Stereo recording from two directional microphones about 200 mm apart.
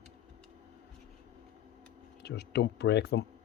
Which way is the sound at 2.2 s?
55° left (ahead or behind).